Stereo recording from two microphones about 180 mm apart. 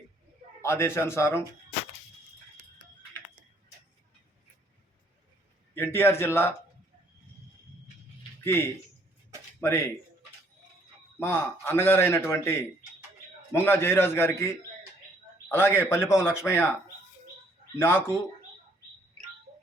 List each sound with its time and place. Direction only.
0.6 s a man's voice: 15° left (ahead or behind)
5.7 s a man's voice: 10° left (ahead or behind)
9.6 s speech: 15° left (ahead or behind)
11.2 s a man's voice: 10° left (ahead or behind)
17.7 s a man's voice: 15° left (ahead or behind)